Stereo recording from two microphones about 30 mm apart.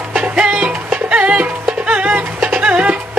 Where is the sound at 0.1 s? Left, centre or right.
Right.